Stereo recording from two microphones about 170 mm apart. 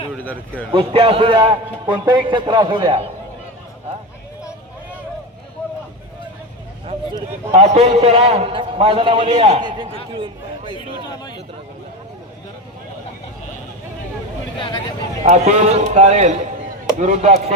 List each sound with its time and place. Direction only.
0.2 s a man's voice: 10° left (ahead or behind)
0.7 s a man's voice: 30° right (ahead or behind)
7.5 s a man's voice: 40° right (ahead or behind)
15.2 s a man's voice: 40° right (ahead or behind)